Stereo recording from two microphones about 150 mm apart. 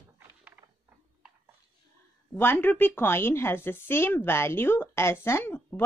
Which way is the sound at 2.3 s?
15° left (ahead or behind).